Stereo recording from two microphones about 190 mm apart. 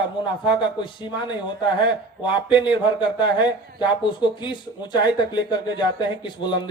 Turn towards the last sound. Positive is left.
turn(degrees=25)  # may be behind; listen again after turning